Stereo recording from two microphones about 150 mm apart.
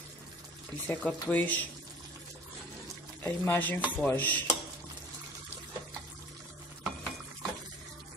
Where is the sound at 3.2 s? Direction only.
15° left (ahead or behind).